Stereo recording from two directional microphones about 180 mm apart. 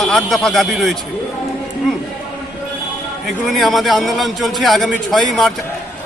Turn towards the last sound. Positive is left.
turn(degrees=0)  # may be behind; listen again after turning